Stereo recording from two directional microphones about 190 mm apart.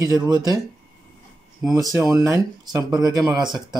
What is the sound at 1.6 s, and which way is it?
Speech, 15° right (ahead or behind).